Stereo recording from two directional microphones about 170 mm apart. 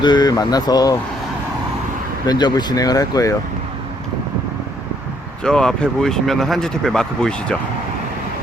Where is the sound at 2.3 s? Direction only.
25° left (ahead or behind).